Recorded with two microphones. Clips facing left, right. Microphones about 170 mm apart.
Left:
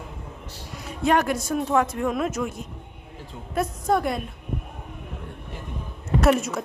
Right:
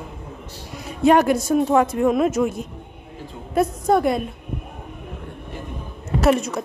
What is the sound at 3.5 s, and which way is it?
Speech, 5° right (ahead or behind).